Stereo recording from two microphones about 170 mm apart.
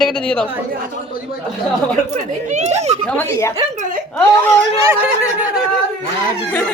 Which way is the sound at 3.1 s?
15° left (ahead or behind).